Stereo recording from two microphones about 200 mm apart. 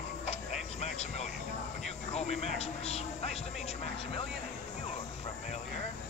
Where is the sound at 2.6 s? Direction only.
30° left (ahead or behind).